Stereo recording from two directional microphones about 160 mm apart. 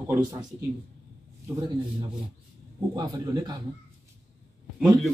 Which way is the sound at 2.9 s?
25° right (ahead or behind).